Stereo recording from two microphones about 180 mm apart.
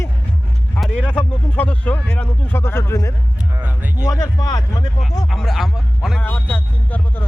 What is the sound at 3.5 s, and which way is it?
Speech, 10° right (ahead or behind).